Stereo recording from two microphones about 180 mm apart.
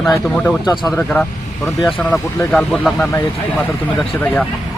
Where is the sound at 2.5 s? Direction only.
Centre (ahead or behind).